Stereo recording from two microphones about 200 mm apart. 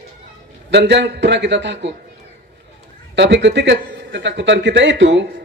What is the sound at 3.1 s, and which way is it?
A man's voice, 60° right (ahead or behind).